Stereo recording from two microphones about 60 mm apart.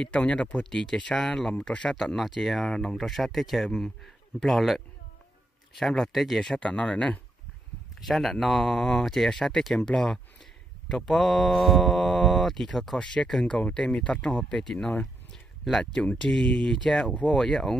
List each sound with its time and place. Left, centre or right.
0.0 s speech: centre
2.0 s speech: centre
6.6 s speech: left
8.0 s speech: centre
13.6 s speech: left
17.3 s speech: centre